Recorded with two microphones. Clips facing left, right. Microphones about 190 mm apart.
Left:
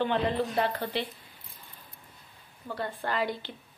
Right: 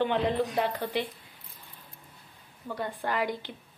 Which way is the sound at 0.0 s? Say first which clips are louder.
Right 1 dB; 15° right (ahead or behind).